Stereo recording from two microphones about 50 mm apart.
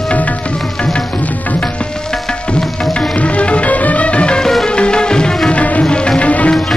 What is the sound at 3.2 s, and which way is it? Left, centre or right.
Music, left.